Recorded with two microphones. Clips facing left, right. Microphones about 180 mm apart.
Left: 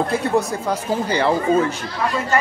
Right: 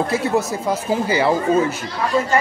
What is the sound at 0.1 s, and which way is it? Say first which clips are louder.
Speech: even; 5° right (ahead or behind).